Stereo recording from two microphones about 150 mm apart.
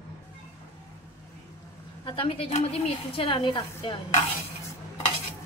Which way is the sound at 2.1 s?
40° left (ahead or behind).